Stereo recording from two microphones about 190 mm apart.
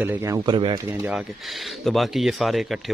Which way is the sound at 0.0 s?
10° right (ahead or behind).